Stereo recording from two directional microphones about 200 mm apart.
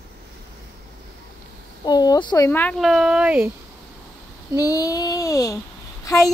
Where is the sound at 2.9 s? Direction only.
5° right (ahead or behind).